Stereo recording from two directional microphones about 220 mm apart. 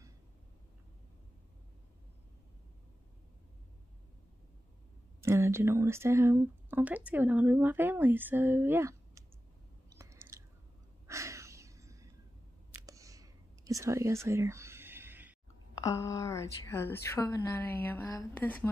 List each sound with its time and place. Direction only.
5.2 s speech: 10° right (ahead or behind)
9.8 s chewing: 15° right (ahead or behind)
11.1 s a sound: 15° right (ahead or behind)
12.7 s whispering: 15° right (ahead or behind)
15.8 s a woman's voice: 15° left (ahead or behind)